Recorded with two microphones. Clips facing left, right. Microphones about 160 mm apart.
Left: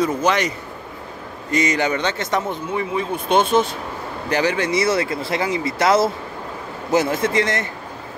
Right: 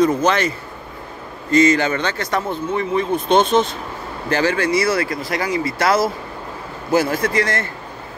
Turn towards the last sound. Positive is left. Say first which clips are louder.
# even
turn(degrees=20)  # may be behind; listen again after turning